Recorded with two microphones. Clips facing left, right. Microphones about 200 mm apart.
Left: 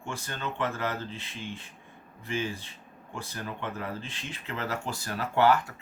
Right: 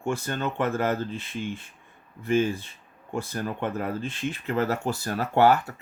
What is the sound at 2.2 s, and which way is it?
Speech, 50° right (ahead or behind).